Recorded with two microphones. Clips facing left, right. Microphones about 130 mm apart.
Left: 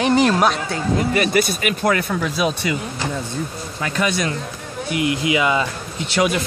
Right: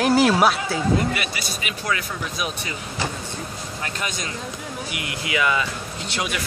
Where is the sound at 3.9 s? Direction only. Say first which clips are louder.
Left 12 dB; 75° left (ahead or behind).